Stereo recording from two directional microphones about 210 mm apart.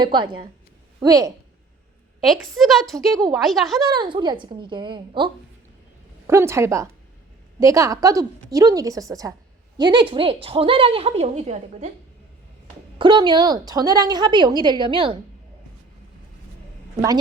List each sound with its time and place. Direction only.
0.0 s a woman's voice: 20° right (ahead or behind)
2.6 s a woman's voice: centre (ahead or behind)
3.8 s a woman's voice: 20° right (ahead or behind)
13.0 s a woman's voice: 20° right (ahead or behind)